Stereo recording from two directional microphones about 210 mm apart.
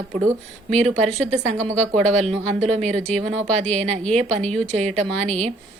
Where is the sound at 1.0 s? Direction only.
30° right (ahead or behind).